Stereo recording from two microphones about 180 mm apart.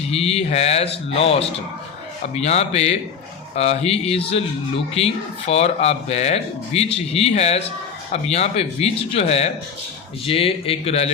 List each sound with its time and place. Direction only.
0.1 s speech: 35° left (ahead or behind)